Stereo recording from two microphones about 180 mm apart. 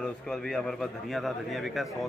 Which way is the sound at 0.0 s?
5° left (ahead or behind).